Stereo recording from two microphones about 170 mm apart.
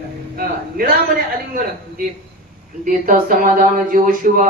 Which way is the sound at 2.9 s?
55° right (ahead or behind).